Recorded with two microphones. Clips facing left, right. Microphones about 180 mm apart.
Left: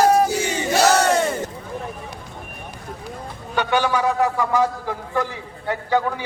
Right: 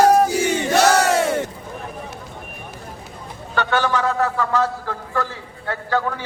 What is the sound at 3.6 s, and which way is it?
A man's voice, 15° left (ahead or behind).